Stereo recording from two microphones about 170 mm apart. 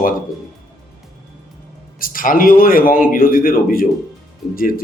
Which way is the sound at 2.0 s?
55° left (ahead or behind).